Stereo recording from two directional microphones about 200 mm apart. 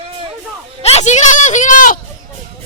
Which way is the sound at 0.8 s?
30° left (ahead or behind).